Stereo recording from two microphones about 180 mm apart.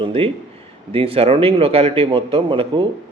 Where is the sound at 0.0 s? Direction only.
30° right (ahead or behind).